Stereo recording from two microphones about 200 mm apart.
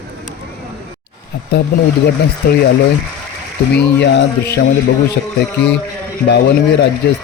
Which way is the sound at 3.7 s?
60° left (ahead or behind).